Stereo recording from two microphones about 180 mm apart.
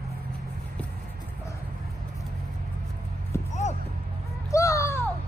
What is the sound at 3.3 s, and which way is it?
Music, 15° left (ahead or behind).